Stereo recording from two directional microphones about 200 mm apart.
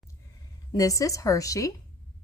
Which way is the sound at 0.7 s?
15° left (ahead or behind).